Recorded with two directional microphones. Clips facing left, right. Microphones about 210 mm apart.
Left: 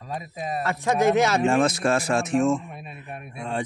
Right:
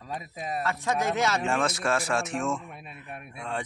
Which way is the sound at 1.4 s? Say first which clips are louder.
Left 7 dB; 35° left (ahead or behind).